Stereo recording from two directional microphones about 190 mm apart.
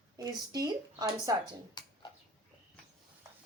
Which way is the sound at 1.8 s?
20° left (ahead or behind).